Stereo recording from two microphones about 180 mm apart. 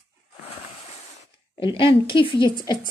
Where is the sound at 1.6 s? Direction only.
30° left (ahead or behind).